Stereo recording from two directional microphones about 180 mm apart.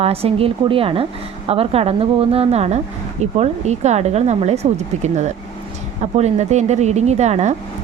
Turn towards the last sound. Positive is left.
turn(degrees=-40)  # may be behind; listen again after turning